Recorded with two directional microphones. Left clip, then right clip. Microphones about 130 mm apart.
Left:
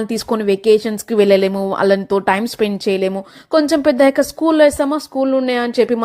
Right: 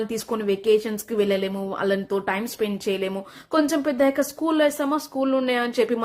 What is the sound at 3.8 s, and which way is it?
Speech, 65° left (ahead or behind).